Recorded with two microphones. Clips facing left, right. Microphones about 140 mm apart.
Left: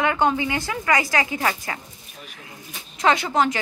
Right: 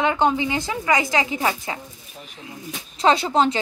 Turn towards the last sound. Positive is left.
turn(degrees=-30)  # may be behind; listen again after turning